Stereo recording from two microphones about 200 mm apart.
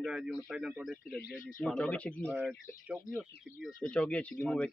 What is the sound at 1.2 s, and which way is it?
Speech, 45° left (ahead or behind).